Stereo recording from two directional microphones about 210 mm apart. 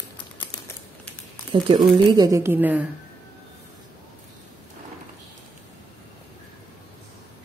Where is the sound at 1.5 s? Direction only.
20° right (ahead or behind).